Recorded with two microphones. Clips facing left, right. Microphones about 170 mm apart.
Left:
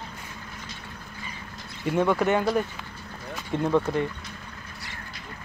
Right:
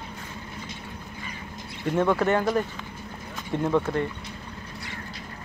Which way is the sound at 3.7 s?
Centre (ahead or behind).